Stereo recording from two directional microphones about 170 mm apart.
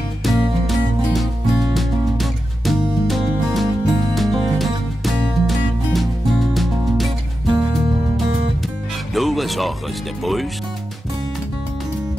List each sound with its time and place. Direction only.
0.2 s music: centre (ahead or behind)
7.4 s music: 25° right (ahead or behind)
9.1 s music: centre (ahead or behind)
10.2 s speech: centre (ahead or behind)